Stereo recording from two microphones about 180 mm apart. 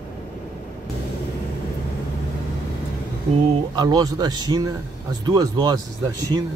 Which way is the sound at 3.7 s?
20° right (ahead or behind).